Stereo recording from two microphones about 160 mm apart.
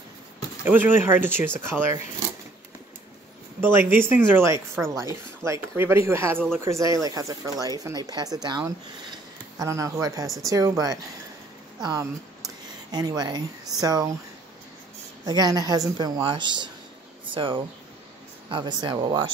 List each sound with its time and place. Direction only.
0.7 s speech: 10° right (ahead or behind)
3.6 s speech: 15° right (ahead or behind)
15.2 s speech: 25° right (ahead or behind)